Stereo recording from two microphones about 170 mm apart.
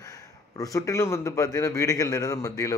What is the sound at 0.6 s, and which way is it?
A man's voice, 20° left (ahead or behind).